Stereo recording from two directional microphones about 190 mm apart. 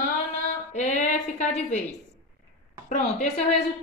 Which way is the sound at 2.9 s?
35° left (ahead or behind).